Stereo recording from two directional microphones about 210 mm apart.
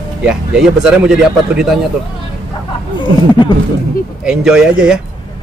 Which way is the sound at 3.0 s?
20° left (ahead or behind).